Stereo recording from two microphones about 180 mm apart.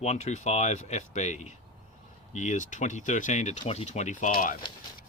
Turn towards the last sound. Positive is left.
turn(degrees=50)  # may be behind; listen again after turning